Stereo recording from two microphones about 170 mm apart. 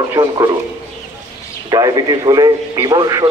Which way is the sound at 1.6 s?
20° right (ahead or behind).